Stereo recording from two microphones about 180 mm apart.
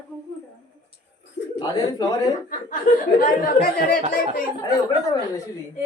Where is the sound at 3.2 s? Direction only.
55° left (ahead or behind).